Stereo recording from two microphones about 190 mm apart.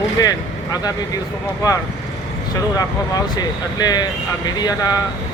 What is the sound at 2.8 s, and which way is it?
Speech, 20° left (ahead or behind).